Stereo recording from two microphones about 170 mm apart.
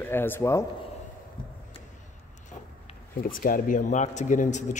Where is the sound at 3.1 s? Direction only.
55° left (ahead or behind).